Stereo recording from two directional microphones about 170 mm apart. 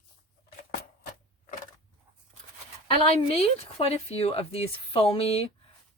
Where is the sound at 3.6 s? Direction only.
35° left (ahead or behind).